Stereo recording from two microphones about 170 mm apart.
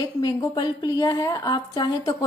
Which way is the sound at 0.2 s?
25° left (ahead or behind).